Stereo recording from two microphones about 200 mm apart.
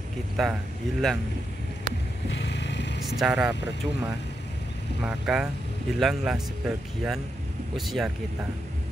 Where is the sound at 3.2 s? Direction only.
5° right (ahead or behind).